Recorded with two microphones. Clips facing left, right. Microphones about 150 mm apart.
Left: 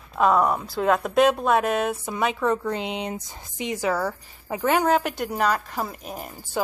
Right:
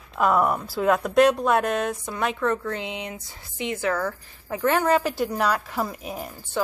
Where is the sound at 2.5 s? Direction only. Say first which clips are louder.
Left 2 dB; 15° left (ahead or behind).